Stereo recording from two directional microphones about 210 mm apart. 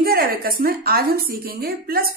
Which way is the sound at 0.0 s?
45° right (ahead or behind).